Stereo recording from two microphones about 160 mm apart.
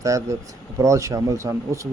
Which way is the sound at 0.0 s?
20° right (ahead or behind).